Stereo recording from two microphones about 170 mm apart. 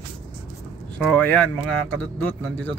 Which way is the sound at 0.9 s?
10° left (ahead or behind).